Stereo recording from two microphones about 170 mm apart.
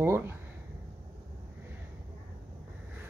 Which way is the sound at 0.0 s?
15° right (ahead or behind).